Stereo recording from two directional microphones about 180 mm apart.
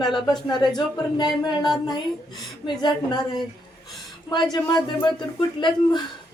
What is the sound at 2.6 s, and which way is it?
A woman's voice, 25° left (ahead or behind).